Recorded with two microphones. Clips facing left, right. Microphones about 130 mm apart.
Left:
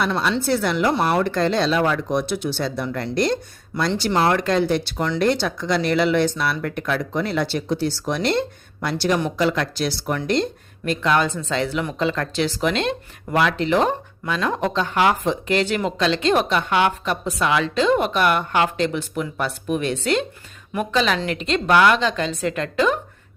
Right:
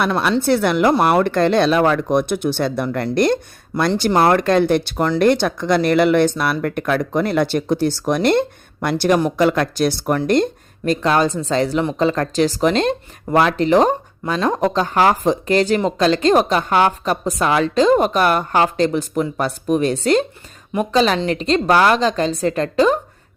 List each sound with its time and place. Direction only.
0.0 s speech: 60° right (ahead or behind); by 23.0 s 35° right (ahead or behind)